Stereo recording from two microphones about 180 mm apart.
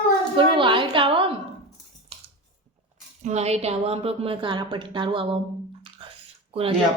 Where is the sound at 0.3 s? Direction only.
30° right (ahead or behind).